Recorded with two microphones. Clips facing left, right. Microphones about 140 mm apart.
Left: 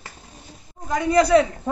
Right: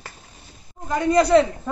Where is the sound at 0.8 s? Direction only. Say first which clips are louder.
Even; 15° left (ahead or behind).